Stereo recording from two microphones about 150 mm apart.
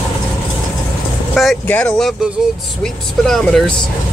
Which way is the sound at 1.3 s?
Centre (ahead or behind).